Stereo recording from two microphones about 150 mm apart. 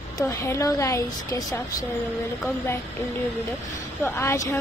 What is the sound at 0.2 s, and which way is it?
Speech, 20° left (ahead or behind).